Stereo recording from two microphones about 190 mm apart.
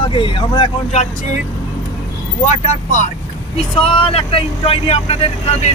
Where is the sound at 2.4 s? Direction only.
35° left (ahead or behind).